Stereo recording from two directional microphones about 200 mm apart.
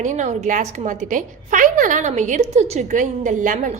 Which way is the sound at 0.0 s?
35° right (ahead or behind).